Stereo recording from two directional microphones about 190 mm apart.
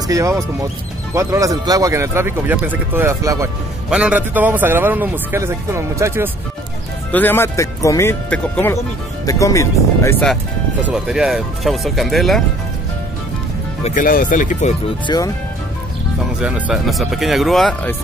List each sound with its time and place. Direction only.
0.1 s a man's voice: 15° right (ahead or behind)
7.1 s speech: 10° left (ahead or behind)
10.8 s speech: 5° right (ahead or behind)
13.8 s speech: 45° left (ahead or behind)
15.0 s speech: 20° left (ahead or behind)
16.3 s speech: 5° right (ahead or behind)